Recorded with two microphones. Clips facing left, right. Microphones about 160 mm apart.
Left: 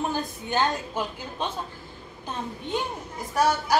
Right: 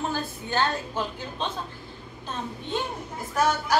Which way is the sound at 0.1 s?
15° left (ahead or behind).